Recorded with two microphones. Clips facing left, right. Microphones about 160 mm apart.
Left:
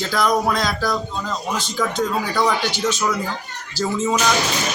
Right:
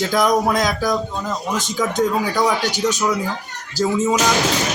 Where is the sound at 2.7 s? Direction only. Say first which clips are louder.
Right 2 dB; 15° right (ahead or behind).